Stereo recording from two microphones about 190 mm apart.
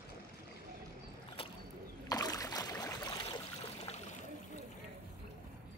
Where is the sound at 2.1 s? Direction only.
20° left (ahead or behind).